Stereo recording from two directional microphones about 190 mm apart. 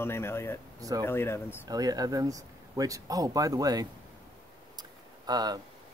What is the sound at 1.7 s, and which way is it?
Speech, 20° right (ahead or behind).